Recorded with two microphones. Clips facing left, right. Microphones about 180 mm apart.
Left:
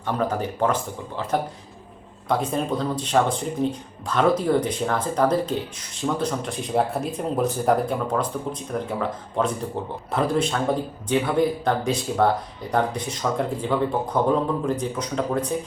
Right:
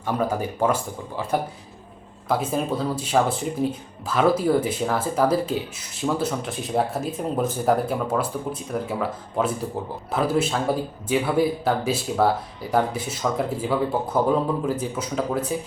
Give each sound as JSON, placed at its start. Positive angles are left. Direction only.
{"t": 0.0, "sound": "speech", "side_deg": -10}